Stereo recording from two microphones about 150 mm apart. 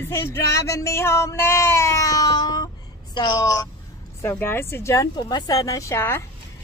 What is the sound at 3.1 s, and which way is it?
Speech, 25° left (ahead or behind).